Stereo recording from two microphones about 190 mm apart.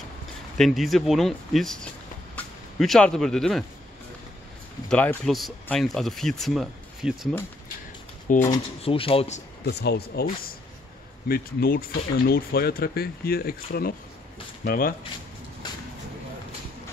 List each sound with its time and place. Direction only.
0.6 s speech: centre (ahead or behind)
4.8 s speech: 5° left (ahead or behind)
8.3 s speech: 45° left (ahead or behind)
8.8 s speech: 30° left (ahead or behind)
9.7 s speech: 60° left (ahead or behind)